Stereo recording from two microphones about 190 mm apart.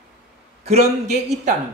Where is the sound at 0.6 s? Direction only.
35° right (ahead or behind).